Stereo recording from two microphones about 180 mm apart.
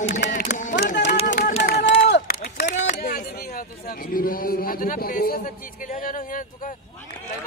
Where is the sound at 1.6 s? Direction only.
60° left (ahead or behind).